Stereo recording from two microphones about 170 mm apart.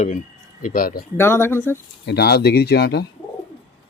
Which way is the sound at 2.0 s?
75° left (ahead or behind).